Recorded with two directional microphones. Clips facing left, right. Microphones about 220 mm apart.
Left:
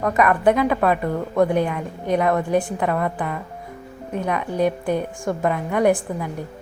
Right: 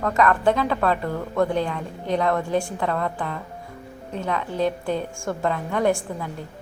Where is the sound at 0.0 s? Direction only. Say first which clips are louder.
Left 2 dB; 15° left (ahead or behind).